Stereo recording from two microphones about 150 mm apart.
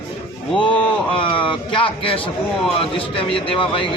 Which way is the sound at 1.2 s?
35° left (ahead or behind).